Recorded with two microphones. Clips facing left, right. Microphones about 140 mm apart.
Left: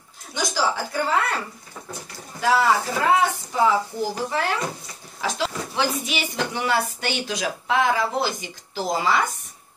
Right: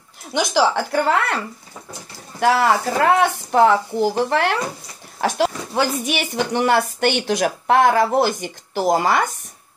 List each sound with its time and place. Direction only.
0.3 s speech: 70° right (ahead or behind)
2.4 s speech: 65° right (ahead or behind)
5.2 s speech: 55° right (ahead or behind)